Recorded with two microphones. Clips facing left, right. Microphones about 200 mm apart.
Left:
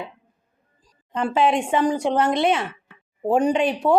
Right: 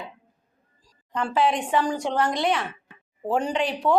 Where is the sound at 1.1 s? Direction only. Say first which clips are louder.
Left 3 dB; 20° left (ahead or behind).